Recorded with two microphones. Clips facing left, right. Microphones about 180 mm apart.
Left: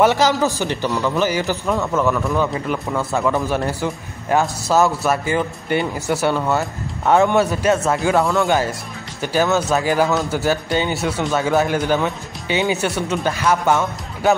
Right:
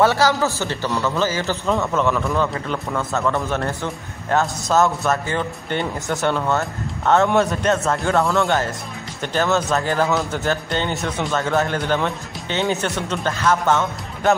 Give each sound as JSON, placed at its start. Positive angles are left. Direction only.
{"t": 0.0, "sound": "speech", "side_deg": 15}